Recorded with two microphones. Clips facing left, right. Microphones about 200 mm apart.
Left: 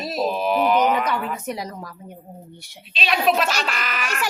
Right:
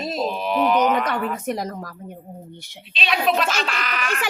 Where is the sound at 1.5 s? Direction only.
50° right (ahead or behind).